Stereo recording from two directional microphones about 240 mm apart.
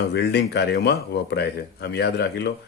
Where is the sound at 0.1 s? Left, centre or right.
Left.